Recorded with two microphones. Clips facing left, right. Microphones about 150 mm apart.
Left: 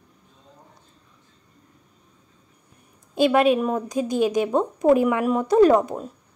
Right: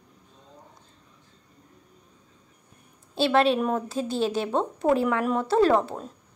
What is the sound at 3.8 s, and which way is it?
A woman's voice, 15° left (ahead or behind).